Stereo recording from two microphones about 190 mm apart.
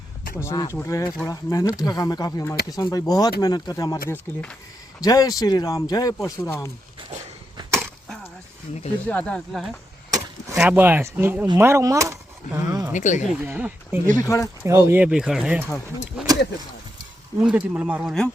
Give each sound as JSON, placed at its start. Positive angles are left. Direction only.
{"t": 0.3, "sound": "speech", "side_deg": 15}
{"t": 4.1, "sound": "speech", "side_deg": 5}
{"t": 4.9, "sound": "speech", "side_deg": 20}
{"t": 7.5, "sound": "chop", "side_deg": -15}
{"t": 9.0, "sound": "speech", "side_deg": 5}
{"t": 10.1, "sound": "speech", "side_deg": -15}
{"t": 12.9, "sound": "speech", "side_deg": 40}
{"t": 13.4, "sound": "speech", "side_deg": -10}
{"t": 14.2, "sound": "speech", "side_deg": 15}
{"t": 14.8, "sound": "speech", "side_deg": -10}
{"t": 17.4, "sound": "speech", "side_deg": -5}